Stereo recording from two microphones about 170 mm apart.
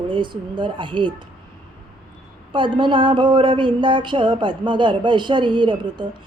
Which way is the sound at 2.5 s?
30° right (ahead or behind).